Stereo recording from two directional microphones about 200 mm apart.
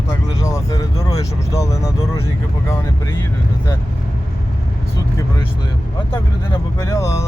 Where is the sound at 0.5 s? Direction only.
20° left (ahead or behind).